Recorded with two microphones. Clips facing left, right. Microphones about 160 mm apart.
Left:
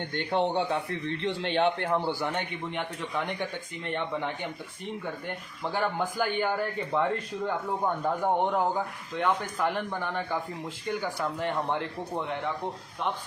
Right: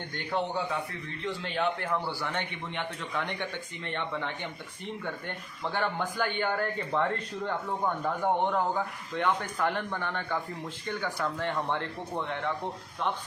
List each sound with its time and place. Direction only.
0.3 s a man's voice: 30° left (ahead or behind)
5.6 s a man's voice: 10° left (ahead or behind)